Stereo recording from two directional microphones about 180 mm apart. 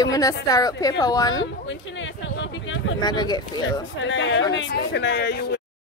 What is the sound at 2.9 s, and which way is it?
Speech, 25° left (ahead or behind).